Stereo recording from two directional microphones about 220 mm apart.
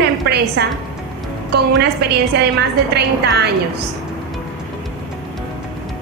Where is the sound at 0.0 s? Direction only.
45° right (ahead or behind).